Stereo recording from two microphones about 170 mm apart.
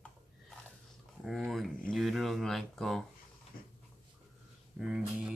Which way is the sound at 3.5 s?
60° left (ahead or behind).